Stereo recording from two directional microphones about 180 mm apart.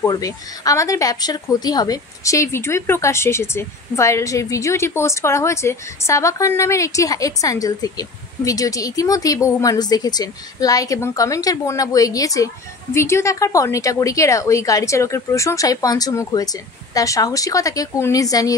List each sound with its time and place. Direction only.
0.0 s speech: 20° left (ahead or behind)